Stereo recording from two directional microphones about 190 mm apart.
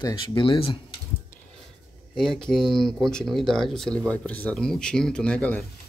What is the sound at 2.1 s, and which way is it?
Speech, 5° left (ahead or behind).